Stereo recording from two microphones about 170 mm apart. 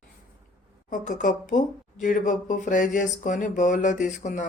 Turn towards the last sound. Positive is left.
turn(degrees=45)  # may be behind; listen again after turning